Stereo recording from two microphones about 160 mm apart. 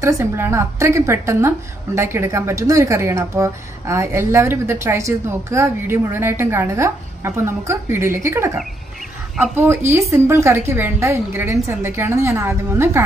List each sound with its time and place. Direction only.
0.0 s speech: 15° right (ahead or behind)